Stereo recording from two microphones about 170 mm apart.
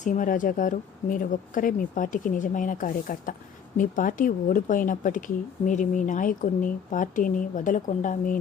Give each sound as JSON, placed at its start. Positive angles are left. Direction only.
{"t": 0.0, "sound": "speech", "side_deg": 50}